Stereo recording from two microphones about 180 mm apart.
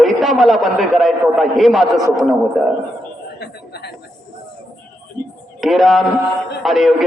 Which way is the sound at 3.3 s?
65° left (ahead or behind).